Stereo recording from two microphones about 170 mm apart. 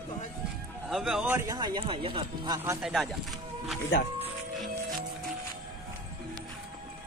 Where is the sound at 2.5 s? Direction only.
15° right (ahead or behind).